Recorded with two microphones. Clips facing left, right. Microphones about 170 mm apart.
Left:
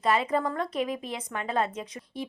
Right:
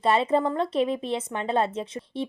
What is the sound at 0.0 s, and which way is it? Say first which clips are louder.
A woman's voice: right 4 dB; 30° right (ahead or behind).